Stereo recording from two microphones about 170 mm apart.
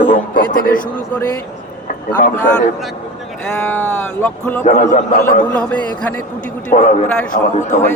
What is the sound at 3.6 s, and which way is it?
Speech, 10° left (ahead or behind).